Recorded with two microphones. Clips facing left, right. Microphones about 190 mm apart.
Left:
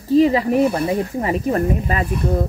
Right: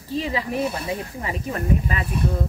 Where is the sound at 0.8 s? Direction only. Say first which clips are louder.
Left 8 dB; 40° left (ahead or behind).